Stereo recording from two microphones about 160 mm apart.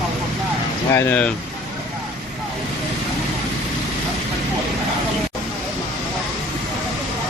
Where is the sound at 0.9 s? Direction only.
15° left (ahead or behind).